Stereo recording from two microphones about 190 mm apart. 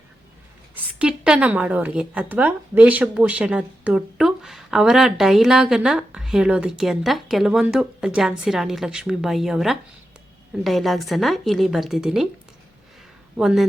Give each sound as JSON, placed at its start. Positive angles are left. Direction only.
{"t": 0.9, "sound": "a woman's voice", "side_deg": -5}
{"t": 13.3, "sound": "a woman's voice", "side_deg": -5}